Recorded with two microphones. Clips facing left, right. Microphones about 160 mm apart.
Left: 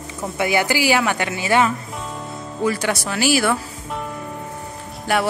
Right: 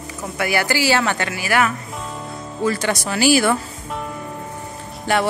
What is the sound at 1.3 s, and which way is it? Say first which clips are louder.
Speech: left 2 dB; 20° left (ahead or behind).